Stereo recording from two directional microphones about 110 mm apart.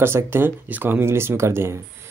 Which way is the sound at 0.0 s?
20° right (ahead or behind).